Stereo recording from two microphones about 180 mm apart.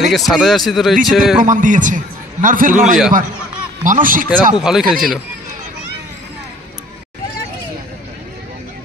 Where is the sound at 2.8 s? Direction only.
5° right (ahead or behind).